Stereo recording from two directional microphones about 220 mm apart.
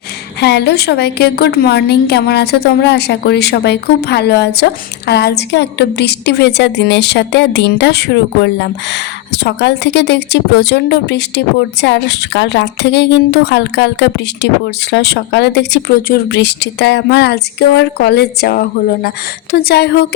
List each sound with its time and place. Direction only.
0.3 s a woman's voice: 50° left (ahead or behind)